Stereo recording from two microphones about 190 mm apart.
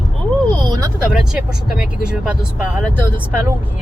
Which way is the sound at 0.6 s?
20° right (ahead or behind).